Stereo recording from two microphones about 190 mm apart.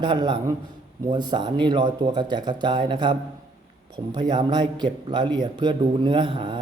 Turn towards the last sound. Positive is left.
turn(degrees=-25)  # may be behind; listen again after turning